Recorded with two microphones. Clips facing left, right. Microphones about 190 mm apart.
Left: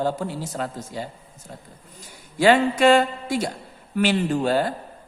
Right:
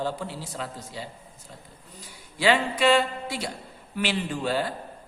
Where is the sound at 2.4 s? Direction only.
45° left (ahead or behind).